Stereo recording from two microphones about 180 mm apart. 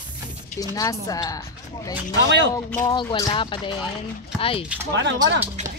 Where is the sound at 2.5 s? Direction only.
20° left (ahead or behind).